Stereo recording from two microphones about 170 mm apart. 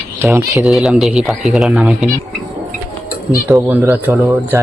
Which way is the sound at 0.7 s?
Centre (ahead or behind).